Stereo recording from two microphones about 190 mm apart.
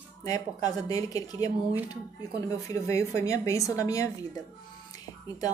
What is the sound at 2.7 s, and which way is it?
A woman's voice, 15° left (ahead or behind).